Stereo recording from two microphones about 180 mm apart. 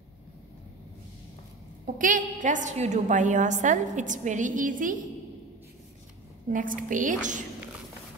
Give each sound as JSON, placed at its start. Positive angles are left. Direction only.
{"t": 2.0, "sound": "a woman's voice", "side_deg": -50}
{"t": 6.5, "sound": "a woman's voice", "side_deg": -50}